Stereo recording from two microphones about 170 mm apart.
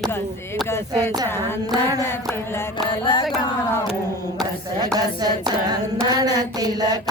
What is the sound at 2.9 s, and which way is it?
Music, 30° left (ahead or behind).